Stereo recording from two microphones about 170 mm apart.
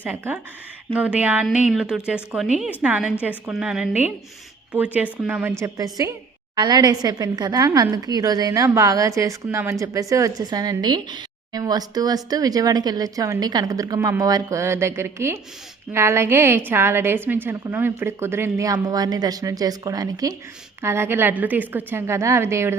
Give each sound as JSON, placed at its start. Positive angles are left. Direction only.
{"t": 0.0, "sound": "a woman's voice", "side_deg": -10}